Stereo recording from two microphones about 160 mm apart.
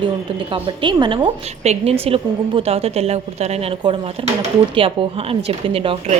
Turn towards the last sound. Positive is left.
turn(degrees=-35)  # may be behind; listen again after turning